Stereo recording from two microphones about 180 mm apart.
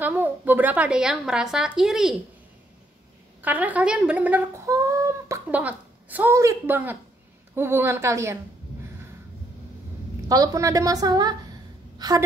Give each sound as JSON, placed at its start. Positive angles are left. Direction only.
{"t": 0.0, "sound": "a woman's voice", "side_deg": -10}
{"t": 3.4, "sound": "a woman's voice", "side_deg": -10}
{"t": 10.2, "sound": "a woman's voice", "side_deg": -20}